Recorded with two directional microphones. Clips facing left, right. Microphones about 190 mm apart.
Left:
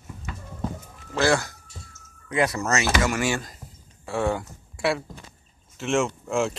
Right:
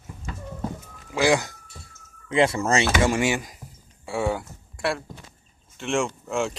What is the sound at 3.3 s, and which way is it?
Speech, 10° right (ahead or behind).